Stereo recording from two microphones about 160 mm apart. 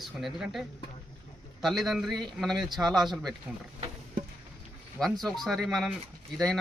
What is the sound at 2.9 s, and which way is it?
Speech, centre (ahead or behind).